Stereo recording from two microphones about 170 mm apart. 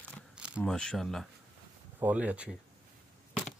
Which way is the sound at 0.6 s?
5° left (ahead or behind).